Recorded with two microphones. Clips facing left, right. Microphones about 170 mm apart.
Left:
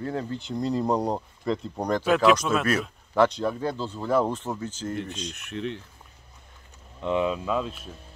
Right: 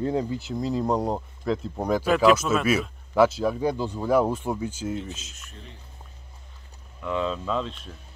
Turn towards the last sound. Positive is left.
turn(degrees=5)  # may be behind; listen again after turning